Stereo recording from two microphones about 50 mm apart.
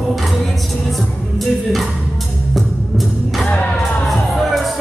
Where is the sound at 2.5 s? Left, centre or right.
Centre.